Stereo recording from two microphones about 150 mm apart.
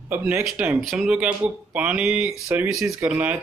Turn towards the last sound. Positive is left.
turn(degrees=-15)  # may be behind; listen again after turning